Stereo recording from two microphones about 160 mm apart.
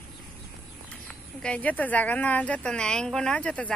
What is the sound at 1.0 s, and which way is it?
Speech, 10° left (ahead or behind).